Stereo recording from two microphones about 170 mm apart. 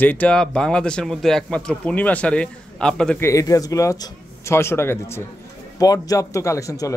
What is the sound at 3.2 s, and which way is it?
Speech, 20° left (ahead or behind).